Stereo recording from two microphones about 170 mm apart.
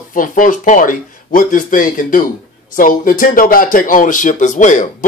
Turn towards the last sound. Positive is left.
turn(degrees=45)  # may be behind; listen again after turning